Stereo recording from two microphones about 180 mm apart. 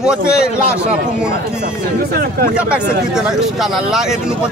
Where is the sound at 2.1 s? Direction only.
60° right (ahead or behind).